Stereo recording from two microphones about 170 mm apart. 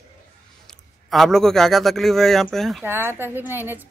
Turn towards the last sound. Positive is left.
turn(degrees=-10)  # may be behind; listen again after turning